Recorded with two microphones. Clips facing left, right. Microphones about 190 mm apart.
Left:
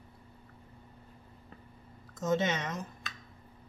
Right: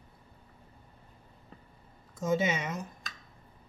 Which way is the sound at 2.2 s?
10° right (ahead or behind).